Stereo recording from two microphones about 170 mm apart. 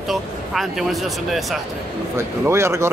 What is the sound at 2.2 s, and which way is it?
Speech, 15° right (ahead or behind).